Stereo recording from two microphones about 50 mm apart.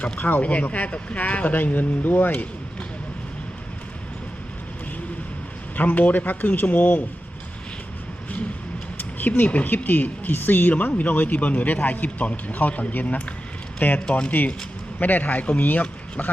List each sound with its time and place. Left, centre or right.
0.0 s speech: left
5.7 s speech: left
9.0 s speech: left